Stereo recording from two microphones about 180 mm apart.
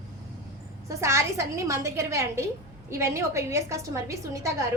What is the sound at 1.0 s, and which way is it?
A woman's voice, 15° right (ahead or behind).